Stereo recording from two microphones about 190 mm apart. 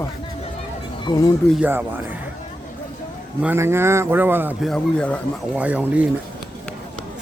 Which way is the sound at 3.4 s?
10° right (ahead or behind).